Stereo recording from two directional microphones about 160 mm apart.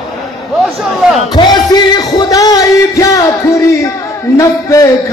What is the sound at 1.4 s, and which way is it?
Music, 25° left (ahead or behind).